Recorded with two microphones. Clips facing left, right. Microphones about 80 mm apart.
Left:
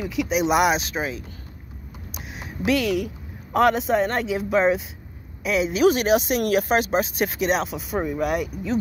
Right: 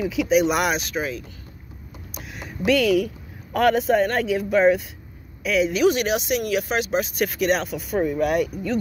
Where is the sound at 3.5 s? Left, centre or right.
Centre.